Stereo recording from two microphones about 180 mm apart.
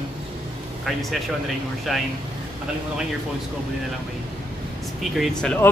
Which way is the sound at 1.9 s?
Centre (ahead or behind).